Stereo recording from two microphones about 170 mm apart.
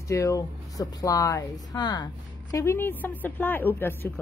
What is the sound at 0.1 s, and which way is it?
Speech, 20° left (ahead or behind).